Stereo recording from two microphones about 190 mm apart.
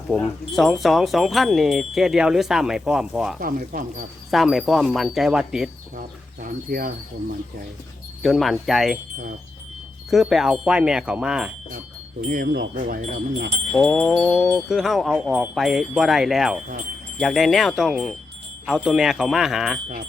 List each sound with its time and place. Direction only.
0.1 s speech: centre (ahead or behind)
3.4 s speech: 45° right (ahead or behind)
4.3 s speech: centre (ahead or behind)
6.0 s speech: 50° right (ahead or behind)
8.2 s speech: centre (ahead or behind)
10.1 s speech: centre (ahead or behind)
12.3 s speech: 50° right (ahead or behind)
13.7 s speech: 5° left (ahead or behind)